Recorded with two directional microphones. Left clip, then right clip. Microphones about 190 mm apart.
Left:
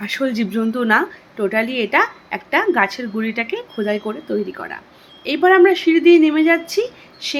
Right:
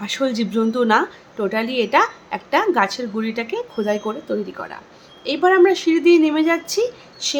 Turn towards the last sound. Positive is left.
turn(degrees=-5)  # may be behind; listen again after turning